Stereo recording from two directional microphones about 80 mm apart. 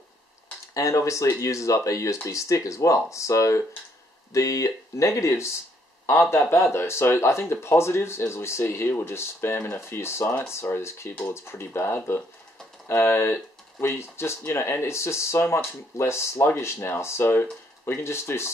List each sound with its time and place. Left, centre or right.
0.7 s speech: left
6.5 s speech: left